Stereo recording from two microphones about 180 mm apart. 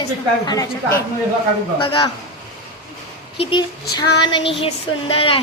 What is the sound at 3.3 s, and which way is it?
A woman's voice, 30° left (ahead or behind).